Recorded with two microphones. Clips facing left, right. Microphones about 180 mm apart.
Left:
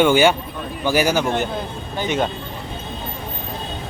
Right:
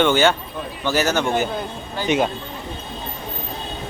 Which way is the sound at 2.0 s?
10° right (ahead or behind).